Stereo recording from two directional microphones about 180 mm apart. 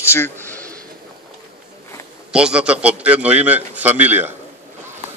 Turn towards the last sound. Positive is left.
turn(degrees=-10)  # may be behind; listen again after turning